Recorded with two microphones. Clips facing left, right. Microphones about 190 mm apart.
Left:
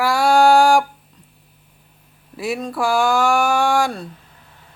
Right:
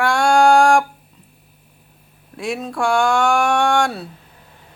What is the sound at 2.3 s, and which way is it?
Speech, centre (ahead or behind).